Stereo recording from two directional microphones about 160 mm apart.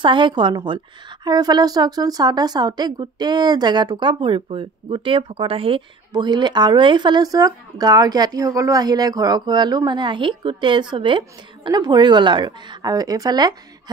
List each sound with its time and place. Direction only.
0.0 s a woman's voice: 30° right (ahead or behind)